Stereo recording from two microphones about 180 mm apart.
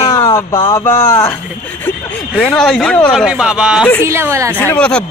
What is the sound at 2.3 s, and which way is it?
Speech, 5° left (ahead or behind).